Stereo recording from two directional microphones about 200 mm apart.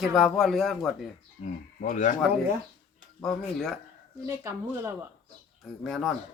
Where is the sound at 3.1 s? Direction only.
Centre (ahead or behind).